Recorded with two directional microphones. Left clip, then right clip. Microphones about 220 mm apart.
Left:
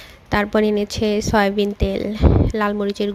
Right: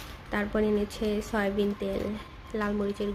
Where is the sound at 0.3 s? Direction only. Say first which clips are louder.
Left 10 dB; 40° left (ahead or behind).